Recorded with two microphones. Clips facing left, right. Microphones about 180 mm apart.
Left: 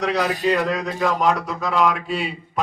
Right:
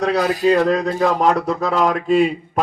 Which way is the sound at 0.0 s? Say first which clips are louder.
Right 4 dB; 50° right (ahead or behind).